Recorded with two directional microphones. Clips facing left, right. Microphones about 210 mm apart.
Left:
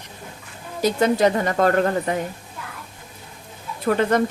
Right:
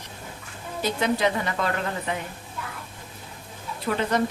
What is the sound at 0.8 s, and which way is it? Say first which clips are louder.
Speech: left 6 dB; 45° left (ahead or behind).